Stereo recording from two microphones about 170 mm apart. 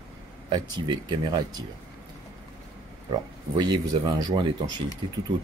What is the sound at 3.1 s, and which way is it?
Speech, 25° right (ahead or behind).